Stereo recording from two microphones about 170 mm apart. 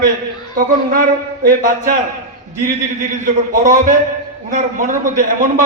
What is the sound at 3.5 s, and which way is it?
A man's voice, 50° right (ahead or behind).